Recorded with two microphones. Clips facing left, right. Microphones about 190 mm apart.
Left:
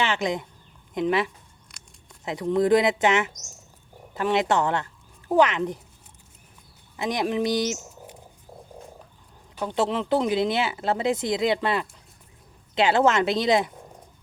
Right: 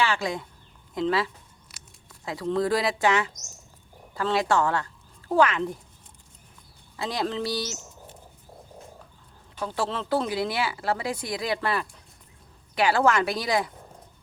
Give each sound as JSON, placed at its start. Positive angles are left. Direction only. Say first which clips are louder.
{"t": 0.0, "sound": "speech", "louder": "left 1 dB", "side_deg": 20}
{"t": 1.7, "sound": "a sound", "louder": "right 1 dB", "side_deg": -5}
{"t": 2.2, "sound": "speech", "louder": "left 3 dB", "side_deg": 20}
{"t": 6.9, "sound": "speech", "louder": "left 3 dB", "side_deg": 20}
{"t": 9.6, "sound": "speech", "louder": "left 4 dB", "side_deg": 20}